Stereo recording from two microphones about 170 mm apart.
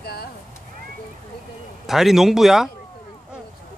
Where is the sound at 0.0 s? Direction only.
70° left (ahead or behind).